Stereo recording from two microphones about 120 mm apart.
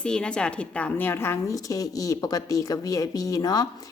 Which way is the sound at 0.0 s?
5° left (ahead or behind).